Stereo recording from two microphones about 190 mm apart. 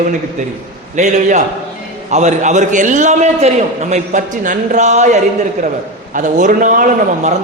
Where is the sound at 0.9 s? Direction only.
40° right (ahead or behind).